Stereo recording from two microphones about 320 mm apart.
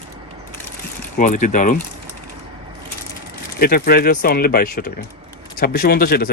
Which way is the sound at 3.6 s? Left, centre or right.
Left.